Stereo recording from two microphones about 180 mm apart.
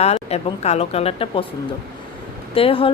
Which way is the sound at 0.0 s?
35° left (ahead or behind).